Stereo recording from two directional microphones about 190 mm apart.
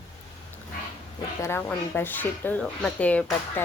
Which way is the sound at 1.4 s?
10° left (ahead or behind).